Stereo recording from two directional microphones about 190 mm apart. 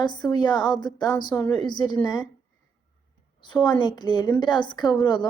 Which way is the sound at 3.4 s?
25° left (ahead or behind).